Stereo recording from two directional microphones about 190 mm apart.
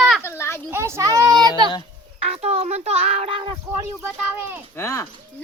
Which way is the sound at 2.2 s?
30° right (ahead or behind).